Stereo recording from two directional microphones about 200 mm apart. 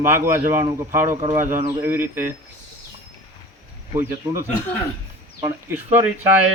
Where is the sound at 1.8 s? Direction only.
10° right (ahead or behind).